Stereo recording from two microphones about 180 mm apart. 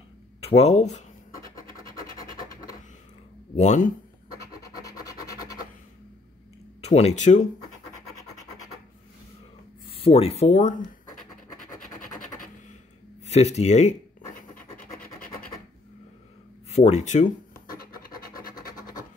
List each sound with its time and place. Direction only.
0.4 s speech: 35° left (ahead or behind)
1.7 s scratch: 50° left (ahead or behind)
3.5 s speech: 40° left (ahead or behind)
4.5 s music: 20° left (ahead or behind)
6.8 s speech: 35° left (ahead or behind)
9.8 s speech: 30° left (ahead or behind)
13.2 s speech: 40° left (ahead or behind)
14.5 s scratch: 50° left (ahead or behind)
16.7 s speech: 40° left (ahead or behind)
18.5 s scratch: 20° left (ahead or behind)